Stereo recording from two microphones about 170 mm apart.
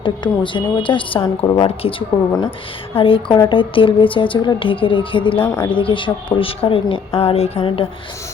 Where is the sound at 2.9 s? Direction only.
30° left (ahead or behind).